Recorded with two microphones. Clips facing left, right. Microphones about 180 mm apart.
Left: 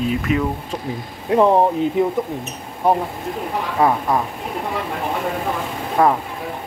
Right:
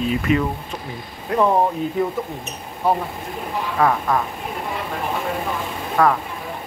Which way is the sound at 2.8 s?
20° left (ahead or behind).